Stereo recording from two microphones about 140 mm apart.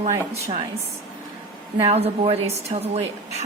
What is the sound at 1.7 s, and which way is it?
A woman's voice, 45° right (ahead or behind).